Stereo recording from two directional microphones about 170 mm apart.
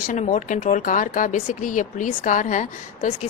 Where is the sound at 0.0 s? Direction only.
50° left (ahead or behind).